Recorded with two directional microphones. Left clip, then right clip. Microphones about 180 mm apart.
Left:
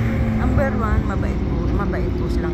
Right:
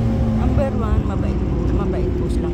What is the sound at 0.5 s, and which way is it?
Speech, centre (ahead or behind).